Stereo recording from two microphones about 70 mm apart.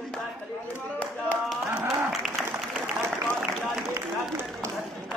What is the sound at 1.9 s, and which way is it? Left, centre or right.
Applause, centre.